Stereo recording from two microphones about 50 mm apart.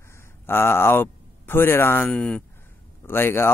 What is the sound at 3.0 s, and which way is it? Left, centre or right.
Speech, left.